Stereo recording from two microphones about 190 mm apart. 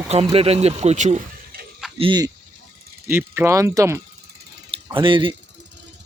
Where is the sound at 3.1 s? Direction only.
10° right (ahead or behind).